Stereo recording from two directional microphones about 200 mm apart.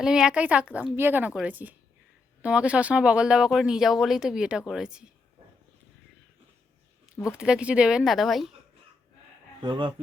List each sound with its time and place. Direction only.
0.0 s a woman's voice: 5° right (ahead or behind)
7.2 s speech: 5° right (ahead or behind)
9.6 s speech: 25° right (ahead or behind)